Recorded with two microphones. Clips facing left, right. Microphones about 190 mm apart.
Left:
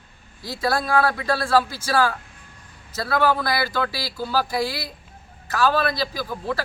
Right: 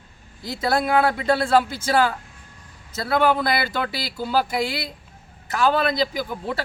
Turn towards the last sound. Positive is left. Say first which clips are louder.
# even
turn(degrees=-20)  # may be behind; listen again after turning